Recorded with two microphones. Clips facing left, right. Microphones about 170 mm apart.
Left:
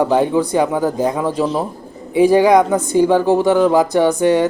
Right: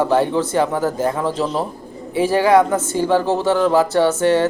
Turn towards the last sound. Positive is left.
turn(degrees=15)  # may be behind; listen again after turning